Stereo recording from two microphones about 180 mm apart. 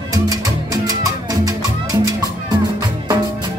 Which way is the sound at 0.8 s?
20° right (ahead or behind).